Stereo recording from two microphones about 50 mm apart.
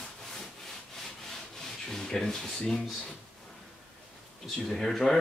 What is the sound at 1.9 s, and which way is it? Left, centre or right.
Speech, centre.